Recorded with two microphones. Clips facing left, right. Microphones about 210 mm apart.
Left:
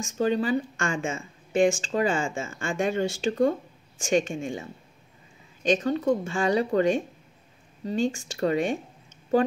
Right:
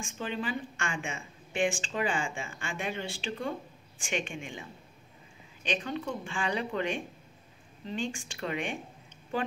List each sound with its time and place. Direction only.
0.0 s speech: 40° left (ahead or behind)